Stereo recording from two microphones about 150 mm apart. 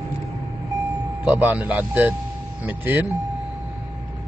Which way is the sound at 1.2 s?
10° right (ahead or behind).